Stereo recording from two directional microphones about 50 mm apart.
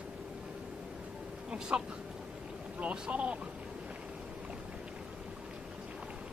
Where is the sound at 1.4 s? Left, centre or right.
Centre.